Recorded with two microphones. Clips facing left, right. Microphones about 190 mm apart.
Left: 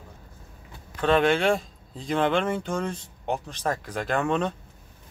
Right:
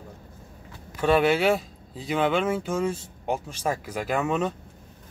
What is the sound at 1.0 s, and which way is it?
Speech, 10° right (ahead or behind).